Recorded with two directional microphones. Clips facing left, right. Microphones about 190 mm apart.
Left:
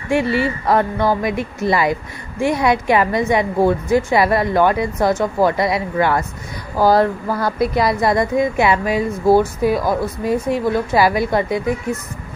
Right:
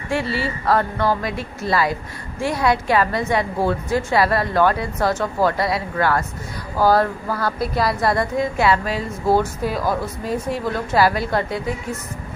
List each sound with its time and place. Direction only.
0.1 s speech: 15° left (ahead or behind)